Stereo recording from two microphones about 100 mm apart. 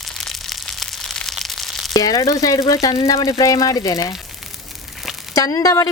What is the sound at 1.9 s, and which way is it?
Speech, 35° left (ahead or behind).